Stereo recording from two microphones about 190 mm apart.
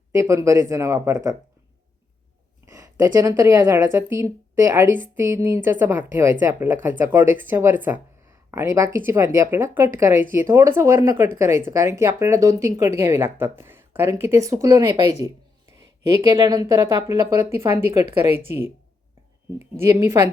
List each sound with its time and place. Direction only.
0.1 s speech: 15° right (ahead or behind)
2.6 s speech: 20° right (ahead or behind)
19.8 s speech: 15° right (ahead or behind)